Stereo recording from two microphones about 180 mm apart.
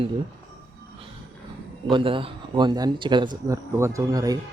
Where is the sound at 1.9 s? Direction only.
30° right (ahead or behind).